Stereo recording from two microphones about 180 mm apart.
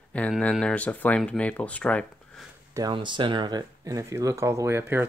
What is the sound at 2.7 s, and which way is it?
Speech, 25° right (ahead or behind).